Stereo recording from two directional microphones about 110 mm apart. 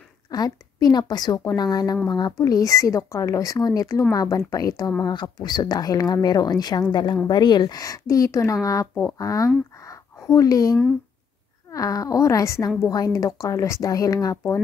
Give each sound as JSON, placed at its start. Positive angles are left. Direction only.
{"t": 0.3, "sound": "a woman's voice", "side_deg": 35}
{"t": 9.8, "sound": "a sound", "side_deg": 30}
{"t": 11.7, "sound": "a woman's voice", "side_deg": 30}